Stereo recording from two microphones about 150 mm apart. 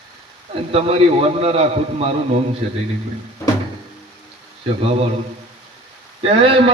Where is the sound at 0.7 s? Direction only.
40° right (ahead or behind).